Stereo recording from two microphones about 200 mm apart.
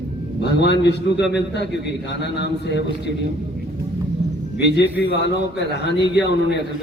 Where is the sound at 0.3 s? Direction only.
60° left (ahead or behind).